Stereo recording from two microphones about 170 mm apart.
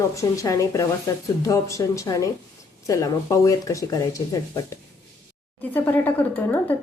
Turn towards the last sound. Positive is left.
turn(degrees=10)  # may be behind; listen again after turning